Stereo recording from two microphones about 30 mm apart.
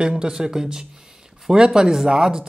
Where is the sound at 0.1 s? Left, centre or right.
Right.